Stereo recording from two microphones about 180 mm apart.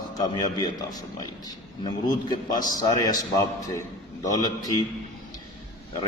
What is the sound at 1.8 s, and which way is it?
A man's voice, 25° left (ahead or behind).